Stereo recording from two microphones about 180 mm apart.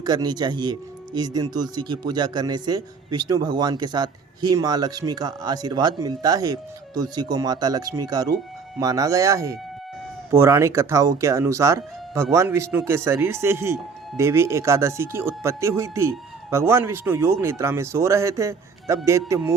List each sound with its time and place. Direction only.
0.0 s speech: 20° right (ahead or behind)